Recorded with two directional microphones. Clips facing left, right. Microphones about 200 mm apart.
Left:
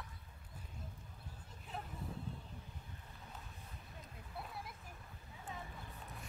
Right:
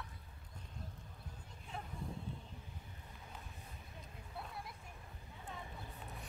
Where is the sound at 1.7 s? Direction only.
5° left (ahead or behind).